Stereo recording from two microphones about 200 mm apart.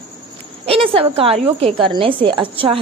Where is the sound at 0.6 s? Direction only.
30° right (ahead or behind).